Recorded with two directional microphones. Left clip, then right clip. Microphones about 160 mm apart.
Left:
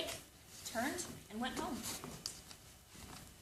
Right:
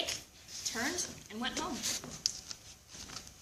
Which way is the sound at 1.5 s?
Centre (ahead or behind).